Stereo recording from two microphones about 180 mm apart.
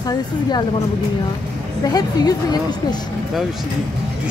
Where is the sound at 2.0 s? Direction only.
20° left (ahead or behind).